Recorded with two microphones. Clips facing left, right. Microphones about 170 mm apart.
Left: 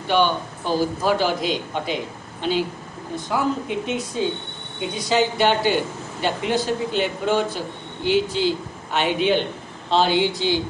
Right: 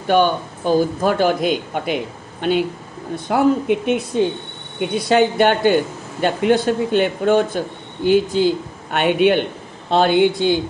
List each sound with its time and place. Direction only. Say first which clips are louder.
0.1 s speech: right 4 dB; 50° right (ahead or behind)
3.3 s a man's voice: right 8 dB; 55° right (ahead or behind)